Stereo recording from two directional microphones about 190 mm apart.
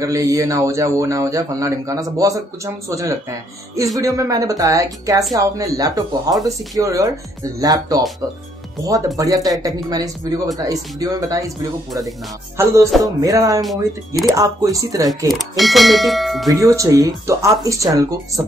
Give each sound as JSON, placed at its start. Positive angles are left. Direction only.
{"t": 0.0, "sound": "speech", "side_deg": -15}
{"t": 13.6, "sound": "speech", "side_deg": 0}
{"t": 14.2, "sound": "speech", "side_deg": -15}
{"t": 15.3, "sound": "speech", "side_deg": 0}
{"t": 16.5, "sound": "speech", "side_deg": -15}